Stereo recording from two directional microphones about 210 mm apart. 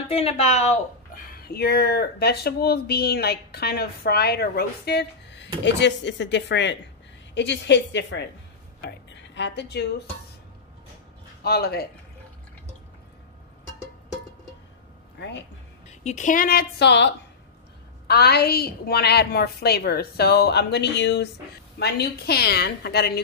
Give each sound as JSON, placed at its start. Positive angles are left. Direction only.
{"t": 0.1, "sound": "a woman's voice", "side_deg": 30}
{"t": 1.5, "sound": "a woman's voice", "side_deg": 50}
{"t": 11.4, "sound": "speech", "side_deg": 50}
{"t": 15.1, "sound": "a sound", "side_deg": 55}
{"t": 15.9, "sound": "speech", "side_deg": 30}